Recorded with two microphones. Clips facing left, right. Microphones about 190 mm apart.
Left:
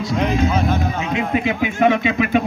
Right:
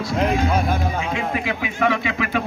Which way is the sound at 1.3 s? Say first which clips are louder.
Left 5 dB; 20° left (ahead or behind).